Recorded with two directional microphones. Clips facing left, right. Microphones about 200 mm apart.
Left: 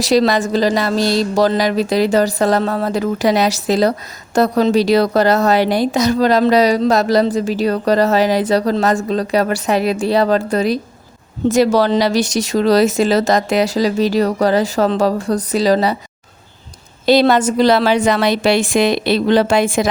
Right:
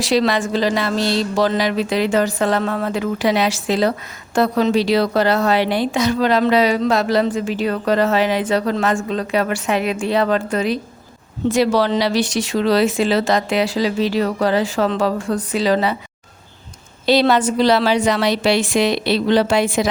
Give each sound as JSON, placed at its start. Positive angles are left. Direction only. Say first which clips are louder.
{"t": 0.0, "sound": "a woman's voice", "louder": "left 3 dB", "side_deg": 40}
{"t": 17.1, "sound": "a woman's voice", "louder": "left 3 dB", "side_deg": 45}